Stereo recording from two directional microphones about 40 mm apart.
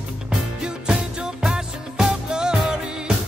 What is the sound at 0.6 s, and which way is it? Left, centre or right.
Music, centre.